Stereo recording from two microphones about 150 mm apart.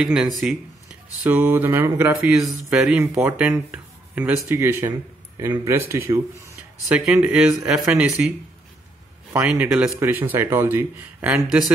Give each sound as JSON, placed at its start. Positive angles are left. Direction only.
{"t": 0.0, "sound": "speech", "side_deg": -5}
{"t": 2.7, "sound": "speech", "side_deg": -5}
{"t": 3.0, "sound": "speech", "side_deg": -15}
{"t": 9.3, "sound": "speech", "side_deg": -10}